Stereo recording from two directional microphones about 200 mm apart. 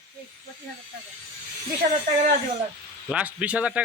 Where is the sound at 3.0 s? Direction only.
5° right (ahead or behind).